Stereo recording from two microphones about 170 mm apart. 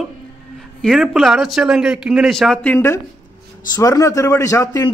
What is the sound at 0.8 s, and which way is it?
A man's voice, centre (ahead or behind).